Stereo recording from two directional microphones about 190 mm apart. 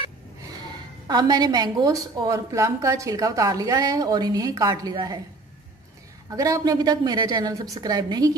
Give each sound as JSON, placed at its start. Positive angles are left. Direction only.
{"t": 1.0, "sound": "a woman's voice", "side_deg": -20}
{"t": 6.3, "sound": "a woman's voice", "side_deg": -15}